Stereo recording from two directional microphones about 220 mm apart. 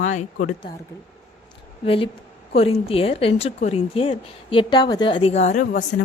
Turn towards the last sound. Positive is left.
turn(degrees=35)  # may be behind; listen again after turning